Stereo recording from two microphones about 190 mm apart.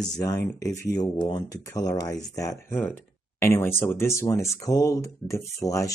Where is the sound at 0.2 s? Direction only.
15° left (ahead or behind).